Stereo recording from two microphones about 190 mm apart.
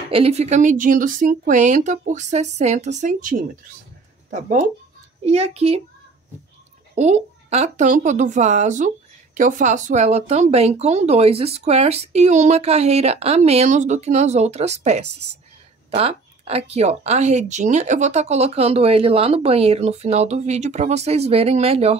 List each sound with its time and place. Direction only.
0.1 s a woman's voice: 30° right (ahead or behind)
7.0 s a woman's voice: 35° right (ahead or behind)